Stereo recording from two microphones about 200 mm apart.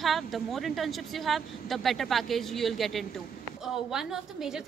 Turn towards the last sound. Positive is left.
turn(degrees=0)  # may be behind; listen again after turning